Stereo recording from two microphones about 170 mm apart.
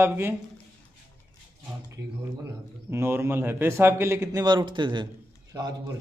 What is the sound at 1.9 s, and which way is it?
A man's voice, 20° right (ahead or behind).